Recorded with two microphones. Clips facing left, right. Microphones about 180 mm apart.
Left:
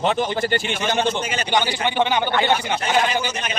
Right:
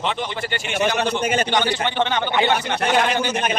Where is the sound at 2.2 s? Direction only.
20° right (ahead or behind).